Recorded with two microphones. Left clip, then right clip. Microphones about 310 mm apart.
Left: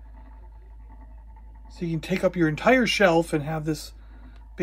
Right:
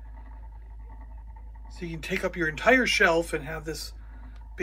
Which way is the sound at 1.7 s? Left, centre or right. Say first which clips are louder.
Left 3 dB; centre.